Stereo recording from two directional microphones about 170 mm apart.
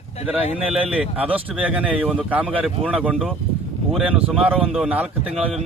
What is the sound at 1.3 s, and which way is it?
Speech, 10° right (ahead or behind).